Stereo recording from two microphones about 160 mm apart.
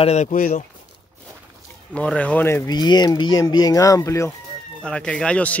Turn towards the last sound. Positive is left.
turn(degrees=5)  # may be behind; listen again after turning